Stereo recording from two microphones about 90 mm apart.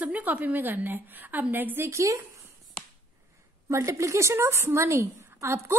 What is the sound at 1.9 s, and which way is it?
Speech, 35° right (ahead or behind).